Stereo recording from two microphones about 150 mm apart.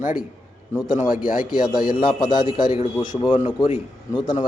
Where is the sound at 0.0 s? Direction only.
60° left (ahead or behind).